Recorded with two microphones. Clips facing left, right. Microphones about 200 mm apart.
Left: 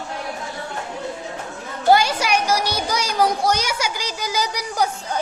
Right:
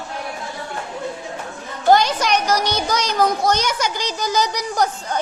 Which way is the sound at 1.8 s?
10° left (ahead or behind).